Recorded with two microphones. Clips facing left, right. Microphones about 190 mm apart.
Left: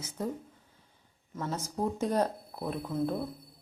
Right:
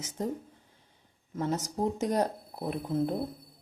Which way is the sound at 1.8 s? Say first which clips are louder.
Even; 20° right (ahead or behind).